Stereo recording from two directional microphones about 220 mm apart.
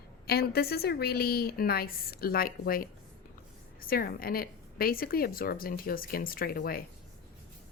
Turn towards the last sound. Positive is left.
turn(degrees=40)  # may be behind; listen again after turning